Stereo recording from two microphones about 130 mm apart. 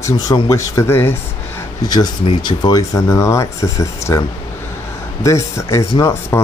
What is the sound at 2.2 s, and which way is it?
Speech, 35° left (ahead or behind).